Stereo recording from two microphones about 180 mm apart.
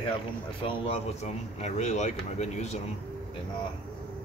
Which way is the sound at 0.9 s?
40° left (ahead or behind).